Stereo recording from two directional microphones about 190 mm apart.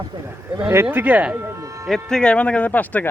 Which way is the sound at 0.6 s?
10° right (ahead or behind).